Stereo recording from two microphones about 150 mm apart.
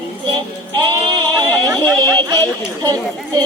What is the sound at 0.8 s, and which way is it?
Speech, 30° right (ahead or behind).